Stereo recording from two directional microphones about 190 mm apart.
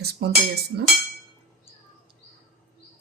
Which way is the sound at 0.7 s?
55° right (ahead or behind).